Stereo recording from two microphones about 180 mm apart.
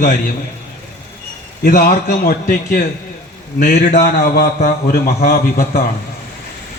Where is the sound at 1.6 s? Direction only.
50° left (ahead or behind).